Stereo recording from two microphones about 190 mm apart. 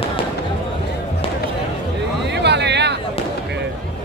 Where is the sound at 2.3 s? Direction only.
65° right (ahead or behind).